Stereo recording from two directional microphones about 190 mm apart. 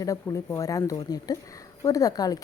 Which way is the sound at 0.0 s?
15° left (ahead or behind).